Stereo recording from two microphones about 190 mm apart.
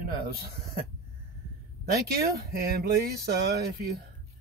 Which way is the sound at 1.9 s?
55° right (ahead or behind).